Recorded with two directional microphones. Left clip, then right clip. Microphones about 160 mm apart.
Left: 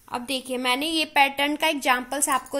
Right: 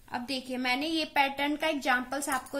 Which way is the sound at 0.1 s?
15° left (ahead or behind).